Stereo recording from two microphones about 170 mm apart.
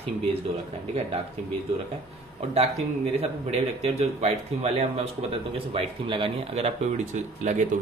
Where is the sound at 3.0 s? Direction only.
35° right (ahead or behind).